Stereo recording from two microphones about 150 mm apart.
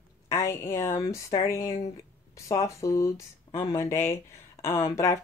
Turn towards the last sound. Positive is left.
turn(degrees=20)  # may be behind; listen again after turning